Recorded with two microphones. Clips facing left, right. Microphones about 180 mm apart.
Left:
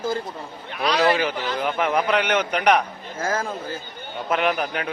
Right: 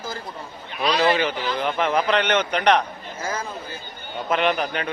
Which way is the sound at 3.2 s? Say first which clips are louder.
Left 4 dB; 50° left (ahead or behind).